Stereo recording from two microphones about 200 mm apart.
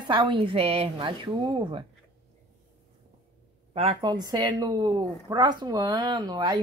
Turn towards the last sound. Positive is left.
turn(degrees=-20)  # may be behind; listen again after turning